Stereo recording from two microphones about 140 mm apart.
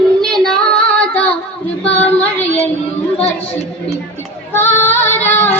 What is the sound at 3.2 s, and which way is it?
Speech, 45° left (ahead or behind).